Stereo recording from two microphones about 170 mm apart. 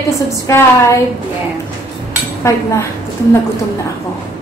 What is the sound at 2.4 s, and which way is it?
Speech, 15° left (ahead or behind).